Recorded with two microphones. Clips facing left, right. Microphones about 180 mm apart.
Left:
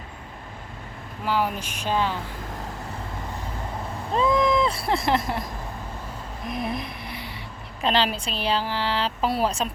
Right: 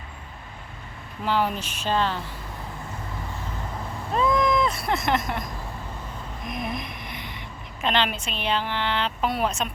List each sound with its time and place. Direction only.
1.2 s a woman's voice: 10° left (ahead or behind)
4.1 s speech: 25° left (ahead or behind)
6.5 s a sound: 30° left (ahead or behind)
7.8 s a woman's voice: 35° left (ahead or behind)